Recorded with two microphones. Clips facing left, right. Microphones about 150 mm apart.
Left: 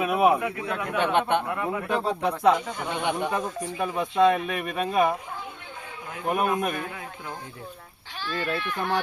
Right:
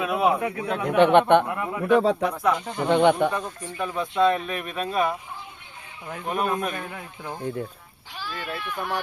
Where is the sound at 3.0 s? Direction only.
50° right (ahead or behind).